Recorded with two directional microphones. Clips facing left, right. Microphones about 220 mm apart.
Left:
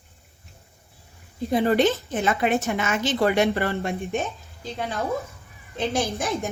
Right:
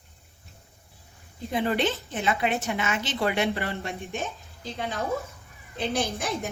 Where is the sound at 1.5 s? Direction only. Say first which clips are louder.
Left 6 dB; 40° left (ahead or behind).